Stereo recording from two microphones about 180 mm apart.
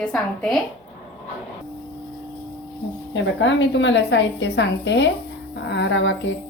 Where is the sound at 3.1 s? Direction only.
90° left.